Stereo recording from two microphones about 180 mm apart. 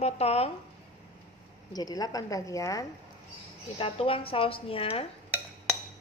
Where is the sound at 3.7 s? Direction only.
30° left (ahead or behind).